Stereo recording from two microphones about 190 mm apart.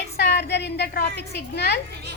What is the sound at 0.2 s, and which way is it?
A woman's voice, 60° left (ahead or behind).